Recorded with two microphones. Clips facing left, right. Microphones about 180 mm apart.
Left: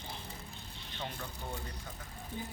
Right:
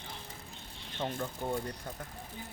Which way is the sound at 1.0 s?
50° right (ahead or behind).